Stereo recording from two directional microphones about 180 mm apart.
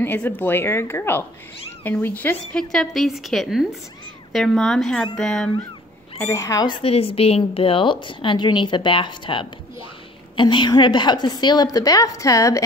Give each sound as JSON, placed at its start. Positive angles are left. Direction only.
{"t": 0.0, "sound": "a woman's voice", "side_deg": 10}
{"t": 6.1, "sound": "speech", "side_deg": 15}